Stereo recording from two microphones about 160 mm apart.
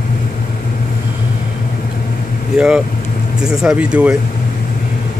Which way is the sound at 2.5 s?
5° right (ahead or behind).